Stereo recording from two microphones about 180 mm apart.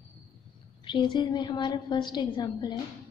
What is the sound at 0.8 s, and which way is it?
A woman's voice, 25° left (ahead or behind).